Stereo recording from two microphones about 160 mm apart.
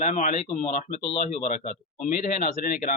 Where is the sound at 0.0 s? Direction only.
50° left (ahead or behind).